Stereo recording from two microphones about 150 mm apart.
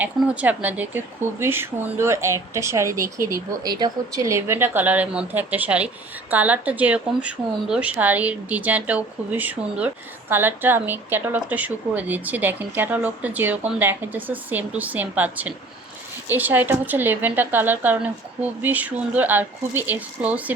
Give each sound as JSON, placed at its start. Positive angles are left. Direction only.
{"t": 0.0, "sound": "speech", "side_deg": -10}